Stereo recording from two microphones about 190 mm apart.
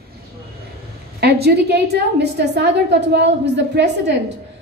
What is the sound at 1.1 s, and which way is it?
A woman's voice, 55° right (ahead or behind).